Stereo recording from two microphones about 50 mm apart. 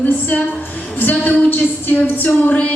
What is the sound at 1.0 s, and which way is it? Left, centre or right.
A woman's voice, left.